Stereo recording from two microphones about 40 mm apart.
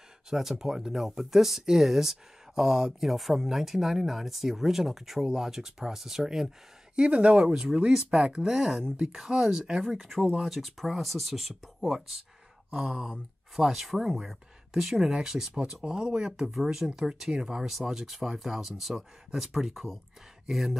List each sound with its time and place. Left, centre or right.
0.3 s speech: centre
7.0 s speech: right; by 10.1 s centre
10.4 s speech: centre
13.6 s speech: centre